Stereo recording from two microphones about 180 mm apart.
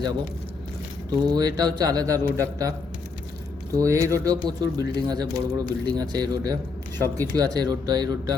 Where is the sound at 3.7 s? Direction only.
15° right (ahead or behind).